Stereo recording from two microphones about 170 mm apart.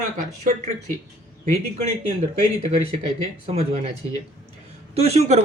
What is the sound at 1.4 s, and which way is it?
Speech, 40° right (ahead or behind).